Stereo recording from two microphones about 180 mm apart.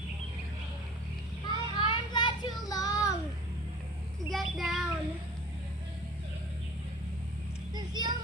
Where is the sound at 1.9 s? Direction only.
25° left (ahead or behind).